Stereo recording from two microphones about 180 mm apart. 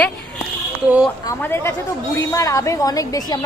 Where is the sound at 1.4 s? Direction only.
10° left (ahead or behind).